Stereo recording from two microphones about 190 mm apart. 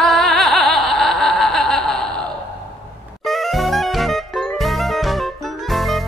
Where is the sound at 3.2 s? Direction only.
Centre (ahead or behind).